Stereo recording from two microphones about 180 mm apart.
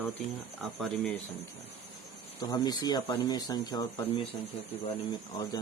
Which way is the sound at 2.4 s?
20° left (ahead or behind).